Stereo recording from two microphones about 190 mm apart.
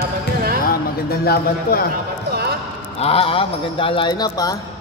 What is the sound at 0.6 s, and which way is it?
Speech, 55° left (ahead or behind).